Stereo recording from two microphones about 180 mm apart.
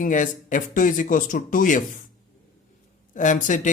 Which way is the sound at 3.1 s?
45° left (ahead or behind).